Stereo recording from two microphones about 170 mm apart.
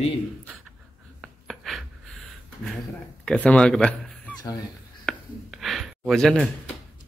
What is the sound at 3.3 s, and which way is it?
Speech, 5° left (ahead or behind).